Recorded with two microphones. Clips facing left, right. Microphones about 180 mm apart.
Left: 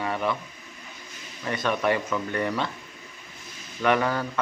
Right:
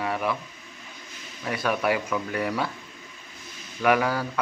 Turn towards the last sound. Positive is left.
turn(degrees=-5)  # may be behind; listen again after turning